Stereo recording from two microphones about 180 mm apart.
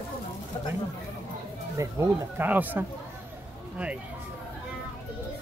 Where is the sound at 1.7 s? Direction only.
15° right (ahead or behind).